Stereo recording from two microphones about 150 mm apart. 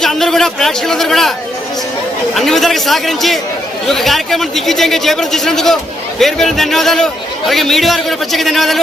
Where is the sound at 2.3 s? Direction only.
Centre (ahead or behind).